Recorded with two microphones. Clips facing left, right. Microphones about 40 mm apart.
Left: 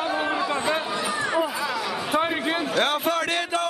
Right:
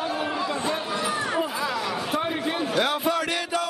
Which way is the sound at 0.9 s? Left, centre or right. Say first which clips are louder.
Left 1 dB; centre.